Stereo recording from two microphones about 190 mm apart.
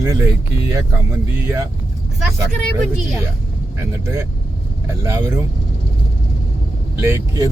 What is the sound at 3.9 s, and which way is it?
Speech, 15° right (ahead or behind).